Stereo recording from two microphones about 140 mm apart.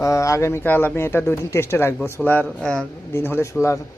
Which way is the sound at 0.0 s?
20° left (ahead or behind).